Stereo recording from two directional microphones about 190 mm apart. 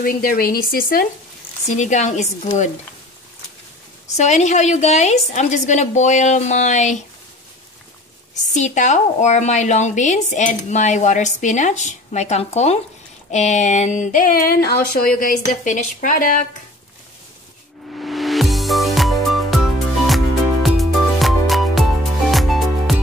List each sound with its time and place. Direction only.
0.0 s a woman's voice: 50° left (ahead or behind)
4.2 s a woman's voice: 40° left (ahead or behind)
8.5 s a woman's voice: 40° left (ahead or behind)
17.9 s music: centre (ahead or behind)
20.6 s music: centre (ahead or behind)